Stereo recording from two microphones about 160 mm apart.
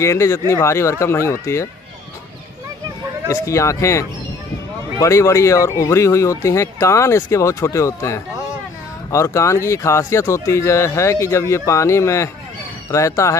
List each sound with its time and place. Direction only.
0.0 s speech: 20° left (ahead or behind)
3.3 s speech: 20° left (ahead or behind)
5.0 s speech: 20° left (ahead or behind)